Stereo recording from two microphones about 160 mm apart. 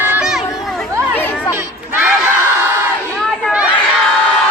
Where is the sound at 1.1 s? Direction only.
10° left (ahead or behind).